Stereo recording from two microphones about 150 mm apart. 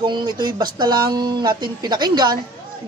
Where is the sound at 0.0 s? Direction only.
30° right (ahead or behind).